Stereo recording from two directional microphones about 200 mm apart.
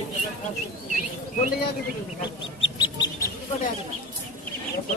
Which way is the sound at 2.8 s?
20° left (ahead or behind).